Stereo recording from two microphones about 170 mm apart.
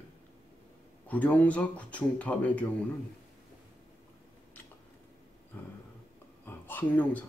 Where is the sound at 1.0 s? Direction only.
10° left (ahead or behind).